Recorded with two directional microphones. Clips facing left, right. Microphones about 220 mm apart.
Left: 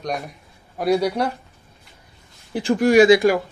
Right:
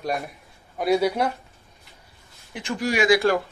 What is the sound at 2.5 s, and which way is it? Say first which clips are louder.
Speech: left 10 dB; 35° left (ahead or behind).